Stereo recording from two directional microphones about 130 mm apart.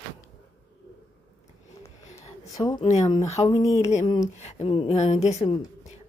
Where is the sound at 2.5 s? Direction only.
30° left (ahead or behind).